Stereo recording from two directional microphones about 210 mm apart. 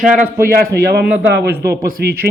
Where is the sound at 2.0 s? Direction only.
50° right (ahead or behind).